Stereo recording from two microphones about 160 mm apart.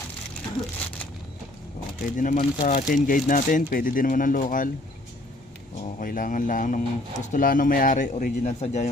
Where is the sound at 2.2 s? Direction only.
55° left (ahead or behind).